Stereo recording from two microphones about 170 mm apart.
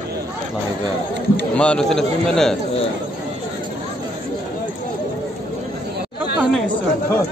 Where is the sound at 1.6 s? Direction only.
5° left (ahead or behind).